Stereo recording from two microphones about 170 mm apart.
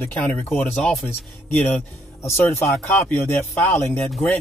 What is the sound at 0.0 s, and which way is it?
Speech, 10° left (ahead or behind).